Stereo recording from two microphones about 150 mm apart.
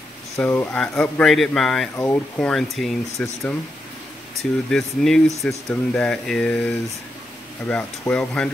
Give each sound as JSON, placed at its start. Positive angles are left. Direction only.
{"t": 0.4, "sound": "a man's voice", "side_deg": 15}
{"t": 2.0, "sound": "a man's voice", "side_deg": 15}